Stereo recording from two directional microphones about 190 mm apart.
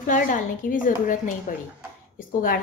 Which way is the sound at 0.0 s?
45° left (ahead or behind).